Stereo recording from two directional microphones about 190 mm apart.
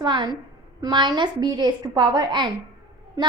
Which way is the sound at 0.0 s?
20° right (ahead or behind).